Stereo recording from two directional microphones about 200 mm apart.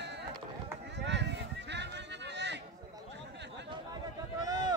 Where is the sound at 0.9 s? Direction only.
60° right (ahead or behind).